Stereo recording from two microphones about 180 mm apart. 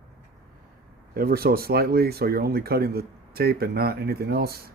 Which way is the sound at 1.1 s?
55° right (ahead or behind).